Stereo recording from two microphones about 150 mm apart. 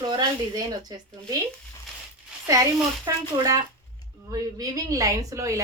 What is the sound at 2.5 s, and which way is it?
A woman's voice, 25° right (ahead or behind).